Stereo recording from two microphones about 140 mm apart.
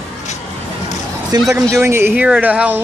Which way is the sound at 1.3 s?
30° right (ahead or behind).